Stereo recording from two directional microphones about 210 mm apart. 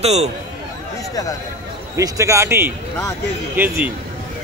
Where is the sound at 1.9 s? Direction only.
15° right (ahead or behind).